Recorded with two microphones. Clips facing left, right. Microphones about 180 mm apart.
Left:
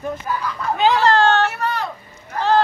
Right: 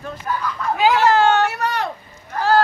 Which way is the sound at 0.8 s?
5° right (ahead or behind).